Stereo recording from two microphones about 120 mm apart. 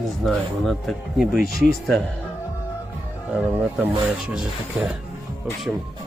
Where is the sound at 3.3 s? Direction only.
15° right (ahead or behind).